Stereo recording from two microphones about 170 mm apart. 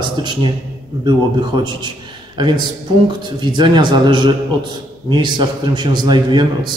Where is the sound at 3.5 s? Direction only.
25° right (ahead or behind).